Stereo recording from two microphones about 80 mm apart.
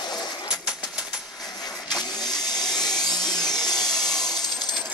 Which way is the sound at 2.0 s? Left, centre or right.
Left.